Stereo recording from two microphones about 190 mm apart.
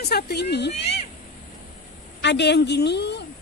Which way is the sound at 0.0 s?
55° left (ahead or behind).